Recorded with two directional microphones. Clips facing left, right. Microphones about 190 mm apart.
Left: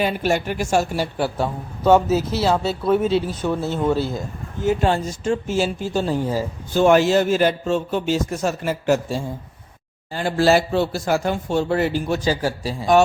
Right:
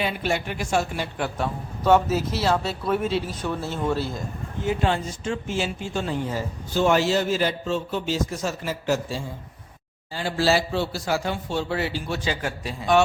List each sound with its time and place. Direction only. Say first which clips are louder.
0.0 s a woman's voice: left 5 dB; 45° left (ahead or behind); by 2.5 s 30° left (ahead or behind)
2.5 s speech: left 5 dB; centre (ahead or behind)
3.4 s speech: left 6 dB; 15° left (ahead or behind)
4.6 s a woman's voice: left 5 dB; 40° left (ahead or behind)
6.7 s a man's voice: left 5 dB; 50° left (ahead or behind); by 13.0 s 35° left (ahead or behind)